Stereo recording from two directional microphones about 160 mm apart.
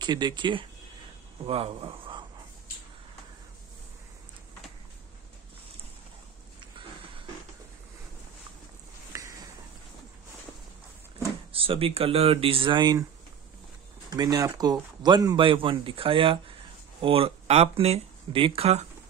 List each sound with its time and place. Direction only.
0.0 s speech: 25° right (ahead or behind)
9.1 s a sound: 20° right (ahead or behind)
11.5 s speech: 35° right (ahead or behind)
14.1 s speech: 25° right (ahead or behind); by 18.9 s 40° right (ahead or behind)